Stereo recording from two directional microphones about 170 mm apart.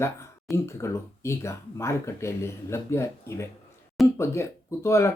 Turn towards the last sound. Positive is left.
turn(degrees=15)  # may be behind; listen again after turning